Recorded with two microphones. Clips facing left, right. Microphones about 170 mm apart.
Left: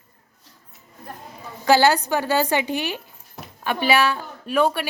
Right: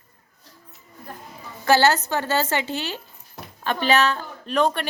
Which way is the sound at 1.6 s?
15° left (ahead or behind).